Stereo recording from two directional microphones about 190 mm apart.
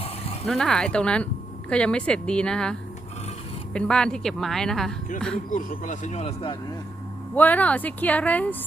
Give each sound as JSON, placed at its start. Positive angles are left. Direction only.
{"t": 0.4, "sound": "a woman's voice", "side_deg": 0}
{"t": 5.5, "sound": "speech", "side_deg": 45}
{"t": 7.3, "sound": "speech", "side_deg": 10}